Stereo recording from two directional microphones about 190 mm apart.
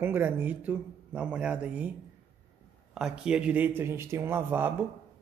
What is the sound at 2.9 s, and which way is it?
A man's voice, 5° right (ahead or behind).